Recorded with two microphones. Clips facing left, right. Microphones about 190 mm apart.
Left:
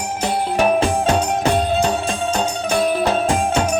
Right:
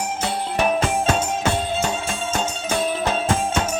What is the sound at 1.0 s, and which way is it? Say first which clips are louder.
Music: left 4 dB; 15° left (ahead or behind).